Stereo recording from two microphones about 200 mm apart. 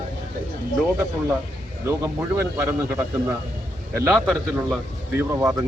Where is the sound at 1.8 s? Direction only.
15° right (ahead or behind).